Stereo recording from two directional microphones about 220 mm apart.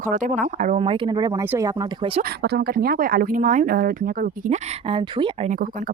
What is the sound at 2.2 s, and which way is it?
Speech, 45° right (ahead or behind).